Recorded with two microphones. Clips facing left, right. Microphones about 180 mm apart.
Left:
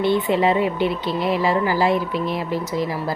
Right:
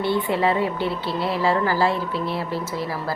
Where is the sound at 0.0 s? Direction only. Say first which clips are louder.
Left 3 dB; 20° left (ahead or behind).